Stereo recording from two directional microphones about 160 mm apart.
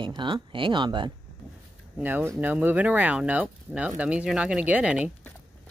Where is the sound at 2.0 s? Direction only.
10° right (ahead or behind).